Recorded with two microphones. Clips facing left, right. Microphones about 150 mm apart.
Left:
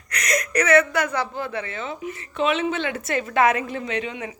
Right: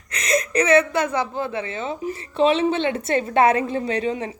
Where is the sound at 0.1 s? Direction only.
25° right (ahead or behind).